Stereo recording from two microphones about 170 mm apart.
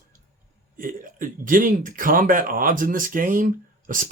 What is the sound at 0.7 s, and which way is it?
Speech, 50° right (ahead or behind).